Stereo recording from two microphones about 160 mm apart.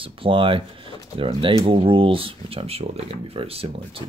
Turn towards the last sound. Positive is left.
turn(degrees=-35)  # may be behind; listen again after turning